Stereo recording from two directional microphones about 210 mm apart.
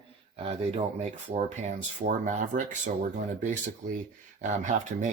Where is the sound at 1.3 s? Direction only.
35° right (ahead or behind).